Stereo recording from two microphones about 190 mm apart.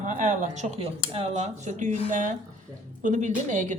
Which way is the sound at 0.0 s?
40° right (ahead or behind).